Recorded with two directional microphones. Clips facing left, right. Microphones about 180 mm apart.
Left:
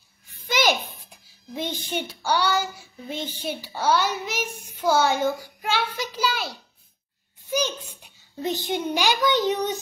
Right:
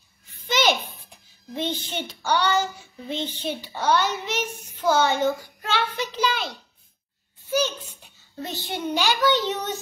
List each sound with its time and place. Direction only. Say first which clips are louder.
0.5 s a child's voice: even; 10° left (ahead or behind)